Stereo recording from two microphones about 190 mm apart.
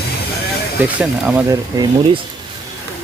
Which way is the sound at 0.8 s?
5° right (ahead or behind).